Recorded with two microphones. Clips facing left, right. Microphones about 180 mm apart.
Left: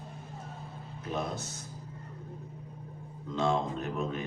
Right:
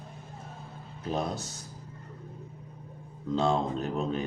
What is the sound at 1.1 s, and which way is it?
Speech, 35° right (ahead or behind).